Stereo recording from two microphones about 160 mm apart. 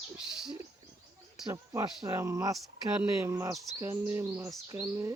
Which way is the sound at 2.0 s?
20° right (ahead or behind).